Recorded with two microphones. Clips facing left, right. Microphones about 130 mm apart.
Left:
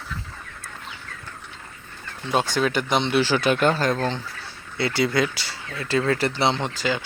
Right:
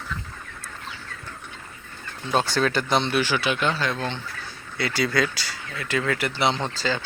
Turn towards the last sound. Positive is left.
turn(degrees=15)  # may be behind; listen again after turning